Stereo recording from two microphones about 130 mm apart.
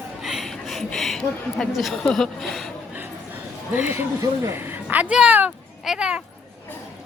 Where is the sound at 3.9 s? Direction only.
20° right (ahead or behind).